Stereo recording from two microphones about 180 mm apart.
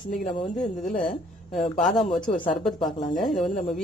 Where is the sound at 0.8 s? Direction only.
50° left (ahead or behind).